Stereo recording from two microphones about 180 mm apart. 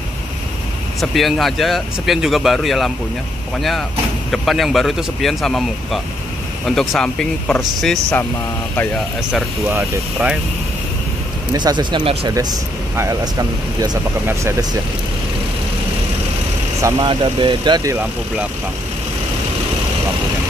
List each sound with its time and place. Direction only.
1.0 s speech: centre (ahead or behind)
4.3 s speech: centre (ahead or behind)
9.3 s speech: 10° right (ahead or behind)
11.5 s speech: 25° right (ahead or behind)
12.3 s speech: 20° right (ahead or behind)
16.8 s speech: 25° right (ahead or behind)
17.9 s speech: 5° right (ahead or behind)